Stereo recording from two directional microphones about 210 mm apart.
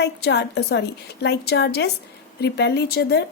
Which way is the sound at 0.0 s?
50° left (ahead or behind).